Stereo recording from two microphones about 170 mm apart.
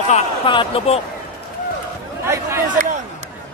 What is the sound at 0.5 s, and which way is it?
Speech, 30° left (ahead or behind).